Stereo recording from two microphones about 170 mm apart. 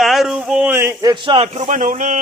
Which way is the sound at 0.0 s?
Centre (ahead or behind).